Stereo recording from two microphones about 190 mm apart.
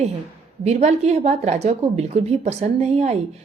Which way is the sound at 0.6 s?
35° right (ahead or behind).